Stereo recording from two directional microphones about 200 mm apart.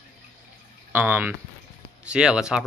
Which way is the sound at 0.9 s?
10° right (ahead or behind).